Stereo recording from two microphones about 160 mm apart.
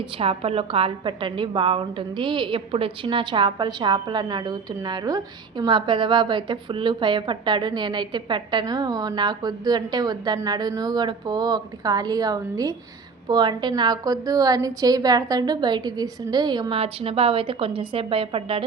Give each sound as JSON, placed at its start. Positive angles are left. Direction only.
{"t": 0.0, "sound": "a woman's voice", "side_deg": -35}